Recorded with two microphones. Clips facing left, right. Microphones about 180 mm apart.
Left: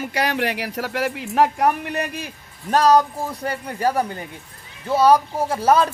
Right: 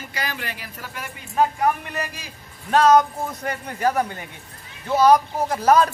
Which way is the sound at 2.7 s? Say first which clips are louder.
Even; 35° left (ahead or behind).